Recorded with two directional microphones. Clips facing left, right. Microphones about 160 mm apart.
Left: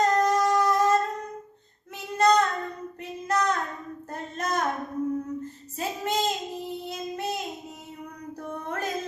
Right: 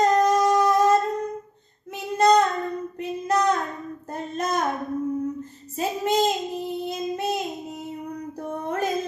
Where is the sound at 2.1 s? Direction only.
15° right (ahead or behind).